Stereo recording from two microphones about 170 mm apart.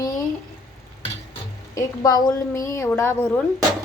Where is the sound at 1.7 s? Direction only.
25° left (ahead or behind).